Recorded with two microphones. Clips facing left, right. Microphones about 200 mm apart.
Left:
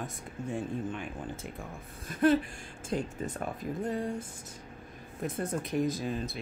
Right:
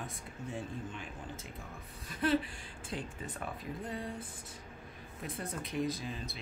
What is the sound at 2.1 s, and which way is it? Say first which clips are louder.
Speech: left 6 dB; 45° left (ahead or behind).